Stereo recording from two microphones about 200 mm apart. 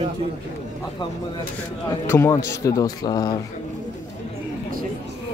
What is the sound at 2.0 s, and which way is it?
A man's voice, 15° left (ahead or behind).